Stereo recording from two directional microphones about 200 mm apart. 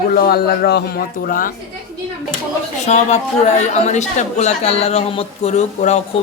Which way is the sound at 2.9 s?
35° left (ahead or behind).